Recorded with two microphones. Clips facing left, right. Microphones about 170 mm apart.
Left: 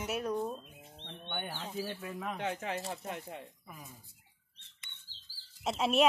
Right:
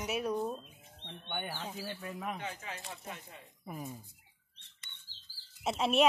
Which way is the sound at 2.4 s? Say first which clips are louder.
Left 6 dB; 60° left (ahead or behind).